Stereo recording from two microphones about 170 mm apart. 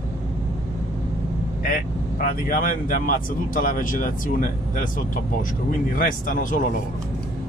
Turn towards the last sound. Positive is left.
turn(degrees=50)  # may be behind; listen again after turning